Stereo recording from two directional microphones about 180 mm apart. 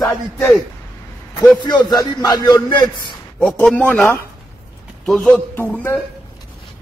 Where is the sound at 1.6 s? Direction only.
25° left (ahead or behind).